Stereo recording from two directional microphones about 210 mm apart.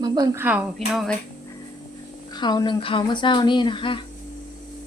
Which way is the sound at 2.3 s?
20° left (ahead or behind).